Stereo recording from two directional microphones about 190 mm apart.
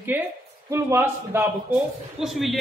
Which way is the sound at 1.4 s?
5° right (ahead or behind).